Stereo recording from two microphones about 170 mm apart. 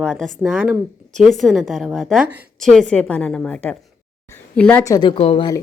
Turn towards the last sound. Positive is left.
turn(degrees=35)  # may be behind; listen again after turning